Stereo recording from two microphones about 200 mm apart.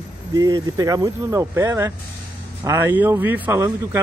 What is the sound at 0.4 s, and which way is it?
Speech, 20° right (ahead or behind).